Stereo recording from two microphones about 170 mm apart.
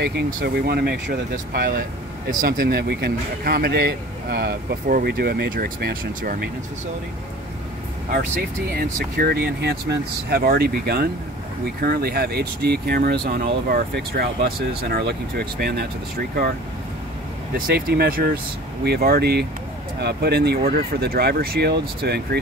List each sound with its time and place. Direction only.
0.3 s speech: 60° right (ahead or behind)
1.5 s speech: 60° right (ahead or behind)
8.1 s speech: 60° right (ahead or behind)
17.6 s speech: 65° right (ahead or behind)